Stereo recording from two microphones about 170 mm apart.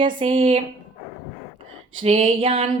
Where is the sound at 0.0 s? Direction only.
30° right (ahead or behind).